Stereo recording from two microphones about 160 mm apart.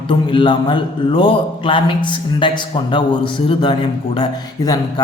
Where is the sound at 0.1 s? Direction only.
30° left (ahead or behind).